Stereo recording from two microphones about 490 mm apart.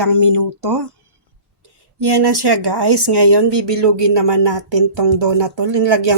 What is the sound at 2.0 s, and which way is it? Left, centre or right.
Speech, right.